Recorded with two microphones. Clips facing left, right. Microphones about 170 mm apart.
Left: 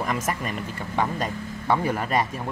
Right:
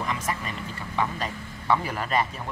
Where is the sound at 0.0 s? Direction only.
50° left (ahead or behind).